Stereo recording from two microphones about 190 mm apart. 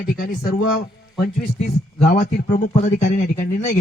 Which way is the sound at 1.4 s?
40° left (ahead or behind).